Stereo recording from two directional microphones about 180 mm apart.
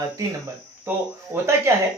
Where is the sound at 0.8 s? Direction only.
15° right (ahead or behind).